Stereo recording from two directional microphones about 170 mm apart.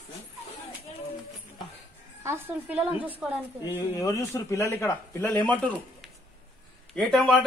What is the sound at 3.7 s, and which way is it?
A man's voice, 20° left (ahead or behind).